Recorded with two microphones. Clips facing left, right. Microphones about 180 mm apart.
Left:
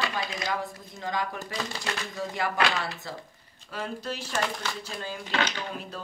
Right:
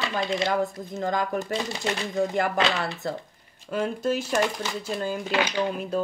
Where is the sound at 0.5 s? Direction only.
50° right (ahead or behind).